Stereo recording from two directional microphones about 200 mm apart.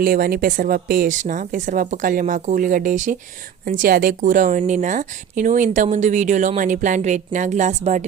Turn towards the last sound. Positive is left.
turn(degrees=-35)  # may be behind; listen again after turning